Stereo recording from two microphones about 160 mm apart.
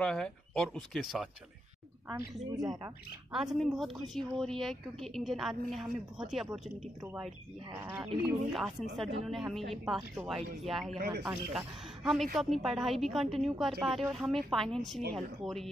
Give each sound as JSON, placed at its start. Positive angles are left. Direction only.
{"t": 0.0, "sound": "a woman's voice", "side_deg": 5}
{"t": 2.0, "sound": "a woman's voice", "side_deg": -20}
{"t": 3.3, "sound": "a woman's voice", "side_deg": -5}